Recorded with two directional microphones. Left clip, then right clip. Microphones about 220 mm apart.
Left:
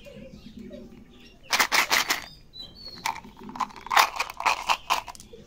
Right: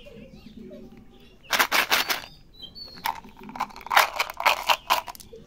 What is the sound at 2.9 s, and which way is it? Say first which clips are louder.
Crunch: right 1 dB; 10° right (ahead or behind).